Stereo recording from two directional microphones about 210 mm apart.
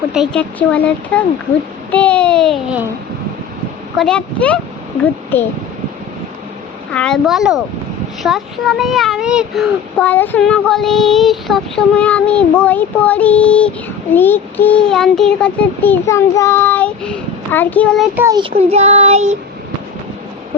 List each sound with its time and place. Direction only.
0.1 s a child's voice: centre (ahead or behind)
3.9 s a child's voice: 5° left (ahead or behind)
6.9 s a child's voice: 5° left (ahead or behind)
18.2 s a child's voice: 15° right (ahead or behind)
18.5 s child singing: 30° right (ahead or behind)